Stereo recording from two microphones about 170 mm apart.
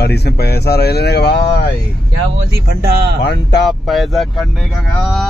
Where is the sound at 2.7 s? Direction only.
70° right (ahead or behind).